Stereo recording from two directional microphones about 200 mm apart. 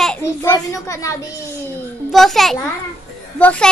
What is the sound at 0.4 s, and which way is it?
Speech, 15° left (ahead or behind).